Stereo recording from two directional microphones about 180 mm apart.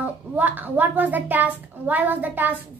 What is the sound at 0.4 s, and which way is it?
A woman's voice, 10° right (ahead or behind).